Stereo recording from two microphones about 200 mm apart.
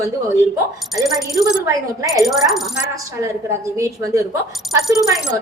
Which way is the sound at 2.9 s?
15° right (ahead or behind).